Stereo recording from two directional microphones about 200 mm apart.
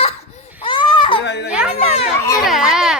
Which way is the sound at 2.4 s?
Centre (ahead or behind).